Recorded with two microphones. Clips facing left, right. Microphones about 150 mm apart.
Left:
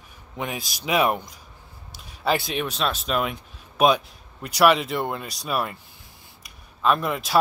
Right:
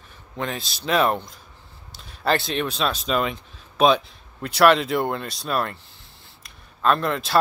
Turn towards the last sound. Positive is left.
turn(degrees=5)  # may be behind; listen again after turning